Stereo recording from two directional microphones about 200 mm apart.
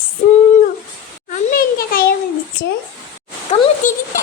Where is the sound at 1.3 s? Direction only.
45° left (ahead or behind).